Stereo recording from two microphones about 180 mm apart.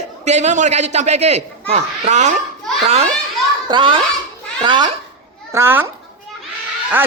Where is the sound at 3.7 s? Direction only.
30° right (ahead or behind).